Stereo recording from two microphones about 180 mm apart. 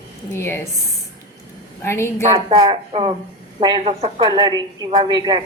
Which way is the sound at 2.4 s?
30° right (ahead or behind).